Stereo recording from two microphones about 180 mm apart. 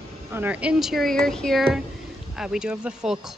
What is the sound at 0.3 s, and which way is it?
Speech, 10° right (ahead or behind).